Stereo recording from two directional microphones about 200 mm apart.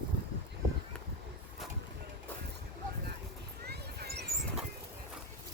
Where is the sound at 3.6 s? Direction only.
50° right (ahead or behind).